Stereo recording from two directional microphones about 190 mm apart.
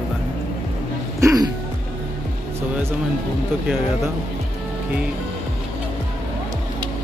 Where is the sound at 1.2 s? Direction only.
20° right (ahead or behind).